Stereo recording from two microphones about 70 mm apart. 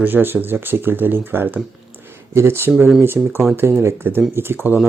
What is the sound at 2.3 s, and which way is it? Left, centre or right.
Speech, right.